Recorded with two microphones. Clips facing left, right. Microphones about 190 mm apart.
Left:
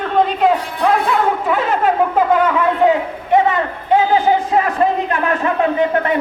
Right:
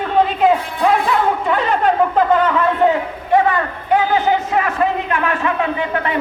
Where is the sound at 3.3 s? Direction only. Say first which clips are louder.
Left 1 dB; 25° left (ahead or behind).